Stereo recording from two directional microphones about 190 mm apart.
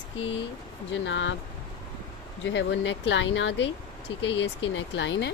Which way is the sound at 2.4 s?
70° left (ahead or behind).